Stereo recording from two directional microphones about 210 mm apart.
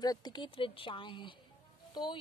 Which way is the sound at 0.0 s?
20° left (ahead or behind).